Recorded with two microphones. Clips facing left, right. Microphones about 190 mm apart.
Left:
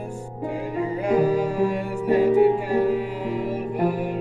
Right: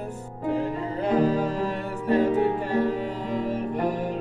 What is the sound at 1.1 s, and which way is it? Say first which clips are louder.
Music: left 2 dB; 10° left (ahead or behind).